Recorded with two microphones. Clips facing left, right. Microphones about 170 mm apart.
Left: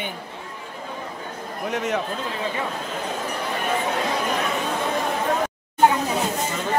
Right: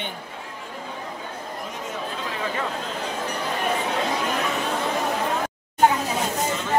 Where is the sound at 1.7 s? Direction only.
75° left (ahead or behind).